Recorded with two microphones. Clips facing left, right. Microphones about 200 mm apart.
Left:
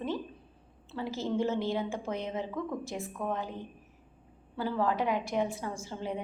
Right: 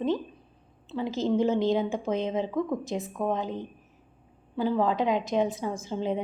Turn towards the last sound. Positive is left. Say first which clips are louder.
# right 7 dB
turn(degrees=-20)  # may be behind; listen again after turning